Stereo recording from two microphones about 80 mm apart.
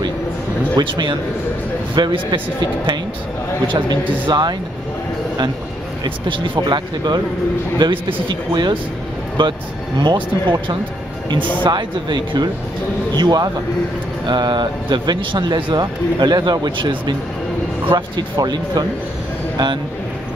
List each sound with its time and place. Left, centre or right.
0.7 s speech: right
2.0 s speech: right
3.6 s speech: right
6.0 s speech: right
7.8 s speech: right
9.4 s speech: right
10.0 s speech: right
17.9 s speech: right